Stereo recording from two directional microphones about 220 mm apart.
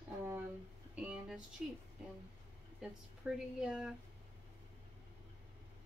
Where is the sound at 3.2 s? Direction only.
5° right (ahead or behind).